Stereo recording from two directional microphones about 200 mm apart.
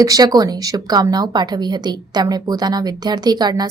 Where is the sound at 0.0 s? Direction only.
20° right (ahead or behind).